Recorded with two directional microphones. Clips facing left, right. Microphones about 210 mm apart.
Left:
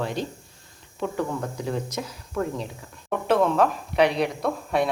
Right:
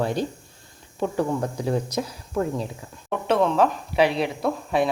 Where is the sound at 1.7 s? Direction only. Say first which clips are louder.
Right 5 dB; 35° right (ahead or behind).